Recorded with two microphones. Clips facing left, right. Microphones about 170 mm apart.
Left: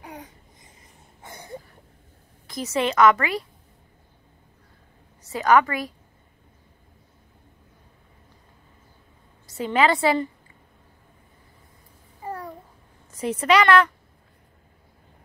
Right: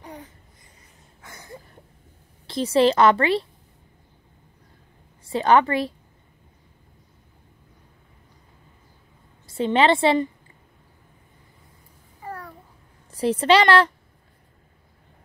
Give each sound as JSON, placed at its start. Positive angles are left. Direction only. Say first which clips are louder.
{"t": 0.0, "sound": "babbling", "louder": "even", "side_deg": 10}
{"t": 2.4, "sound": "a woman's voice", "louder": "right 7 dB", "side_deg": -30}
{"t": 5.2, "sound": "a woman's voice", "louder": "right 1 dB", "side_deg": -30}
{"t": 9.5, "sound": "a woman's voice", "louder": "right 2 dB", "side_deg": -30}
{"t": 12.2, "sound": "babbling", "louder": "left 2 dB", "side_deg": 20}
{"t": 13.1, "sound": "a woman's voice", "louder": "right 3 dB", "side_deg": -30}